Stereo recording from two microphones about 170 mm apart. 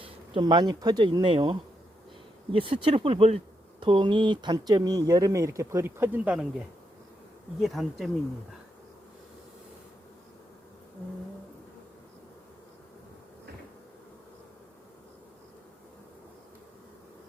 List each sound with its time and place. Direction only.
0.0 s speech: 25° right (ahead or behind); by 6.5 s 5° right (ahead or behind)
7.6 s speech: centre (ahead or behind)